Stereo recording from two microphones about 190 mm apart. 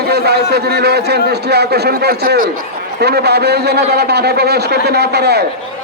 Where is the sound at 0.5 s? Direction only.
60° right (ahead or behind).